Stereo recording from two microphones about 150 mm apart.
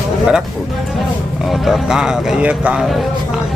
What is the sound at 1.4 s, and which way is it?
A man's voice, centre (ahead or behind).